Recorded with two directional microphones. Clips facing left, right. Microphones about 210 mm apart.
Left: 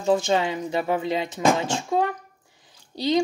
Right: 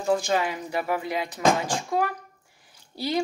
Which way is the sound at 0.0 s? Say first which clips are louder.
Left 3 dB; 25° left (ahead or behind).